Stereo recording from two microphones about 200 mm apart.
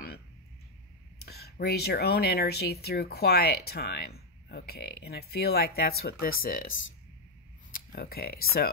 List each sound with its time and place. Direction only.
1.2 s speech: 55° left (ahead or behind)
7.9 s speech: 50° left (ahead or behind)